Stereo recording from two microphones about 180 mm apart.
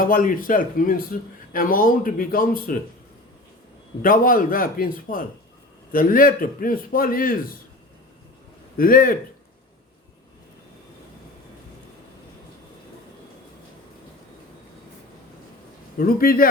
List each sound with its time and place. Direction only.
0.0 s a man's voice: 50° left (ahead or behind)
4.0 s a man's voice: 50° left (ahead or behind)
8.8 s a man's voice: 50° left (ahead or behind)
16.0 s a man's voice: 55° left (ahead or behind)